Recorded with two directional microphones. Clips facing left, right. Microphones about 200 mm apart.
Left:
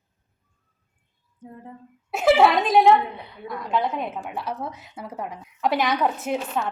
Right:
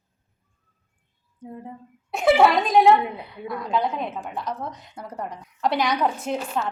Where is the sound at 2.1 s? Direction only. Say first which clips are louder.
Even; 5° left (ahead or behind).